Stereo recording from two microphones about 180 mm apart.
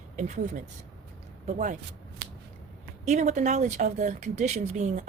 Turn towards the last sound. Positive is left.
turn(degrees=-40)  # may be behind; listen again after turning